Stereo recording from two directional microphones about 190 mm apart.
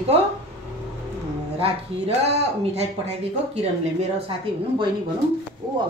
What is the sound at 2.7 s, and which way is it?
Speech, 35° right (ahead or behind).